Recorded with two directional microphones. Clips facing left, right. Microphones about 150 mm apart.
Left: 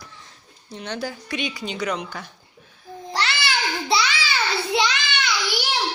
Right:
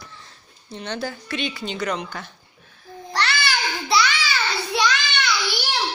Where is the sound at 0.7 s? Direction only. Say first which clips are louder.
Right 1 dB; 10° left (ahead or behind).